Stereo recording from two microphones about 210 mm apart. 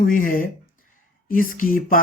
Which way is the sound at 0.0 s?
40° left (ahead or behind).